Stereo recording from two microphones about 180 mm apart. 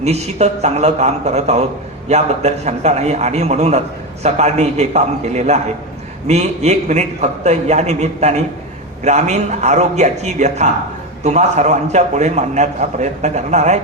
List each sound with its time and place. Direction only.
0.0 s a man's voice: 35° right (ahead or behind)